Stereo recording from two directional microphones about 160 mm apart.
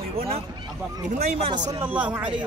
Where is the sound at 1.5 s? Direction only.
20° right (ahead or behind).